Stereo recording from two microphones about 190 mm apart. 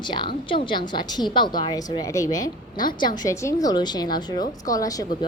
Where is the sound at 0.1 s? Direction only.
25° left (ahead or behind).